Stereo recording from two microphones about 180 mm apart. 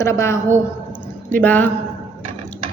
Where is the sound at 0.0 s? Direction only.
15° left (ahead or behind).